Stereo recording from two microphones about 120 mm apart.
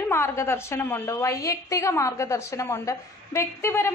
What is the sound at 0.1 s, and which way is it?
A woman's voice, 20° left (ahead or behind).